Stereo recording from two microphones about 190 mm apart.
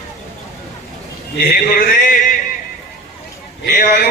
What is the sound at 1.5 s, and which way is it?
Speech, 50° left (ahead or behind).